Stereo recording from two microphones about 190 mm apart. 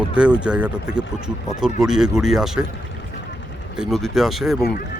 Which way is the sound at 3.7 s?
Centre (ahead or behind).